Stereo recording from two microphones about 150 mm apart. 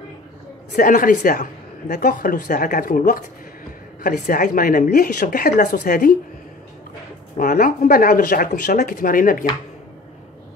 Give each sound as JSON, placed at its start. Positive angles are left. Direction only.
{"t": 0.7, "sound": "a woman's voice", "side_deg": 65}
{"t": 7.3, "sound": "a woman's voice", "side_deg": 70}